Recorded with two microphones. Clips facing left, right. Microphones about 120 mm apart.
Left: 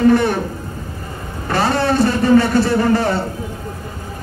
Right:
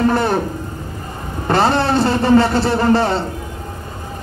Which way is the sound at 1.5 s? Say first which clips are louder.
Right 2 dB; 30° right (ahead or behind).